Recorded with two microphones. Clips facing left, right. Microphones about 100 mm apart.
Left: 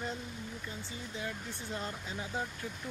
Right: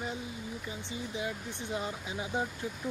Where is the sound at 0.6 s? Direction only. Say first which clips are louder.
Right 4 dB; 15° right (ahead or behind).